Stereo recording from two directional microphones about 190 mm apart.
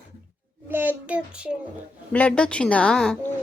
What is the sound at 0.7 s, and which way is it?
Child singing, 10° right (ahead or behind).